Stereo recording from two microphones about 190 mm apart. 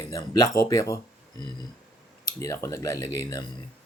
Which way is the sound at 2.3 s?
15° left (ahead or behind).